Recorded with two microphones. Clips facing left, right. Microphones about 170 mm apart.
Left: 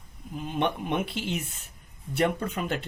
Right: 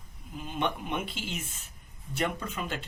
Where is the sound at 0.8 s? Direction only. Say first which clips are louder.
Left 5 dB; 65° left (ahead or behind).